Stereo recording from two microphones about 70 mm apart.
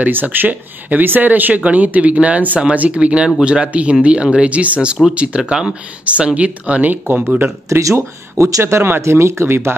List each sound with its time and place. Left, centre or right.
0.0 s speech: right
7.7 s speech: right